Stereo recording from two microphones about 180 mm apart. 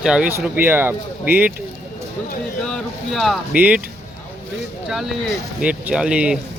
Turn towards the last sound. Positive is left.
turn(degrees=-5)  # may be behind; listen again after turning